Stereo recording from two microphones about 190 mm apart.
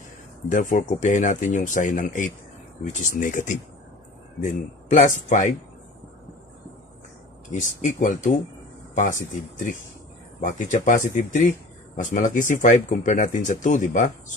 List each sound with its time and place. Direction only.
0.5 s speech: 45° left (ahead or behind)
7.5 s speech: 40° left (ahead or behind)
10.4 s speech: 40° left (ahead or behind)